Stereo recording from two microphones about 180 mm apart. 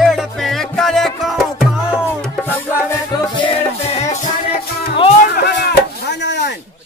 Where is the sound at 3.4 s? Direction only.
35° left (ahead or behind).